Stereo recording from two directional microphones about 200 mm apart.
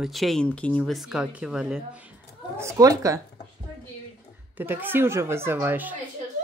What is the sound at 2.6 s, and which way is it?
Speech, 15° right (ahead or behind).